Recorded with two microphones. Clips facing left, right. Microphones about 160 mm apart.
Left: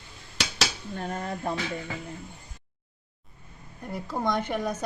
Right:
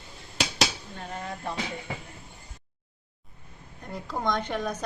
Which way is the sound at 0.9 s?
45° left (ahead or behind).